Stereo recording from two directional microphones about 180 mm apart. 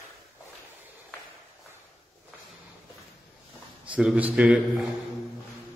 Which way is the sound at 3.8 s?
5° right (ahead or behind).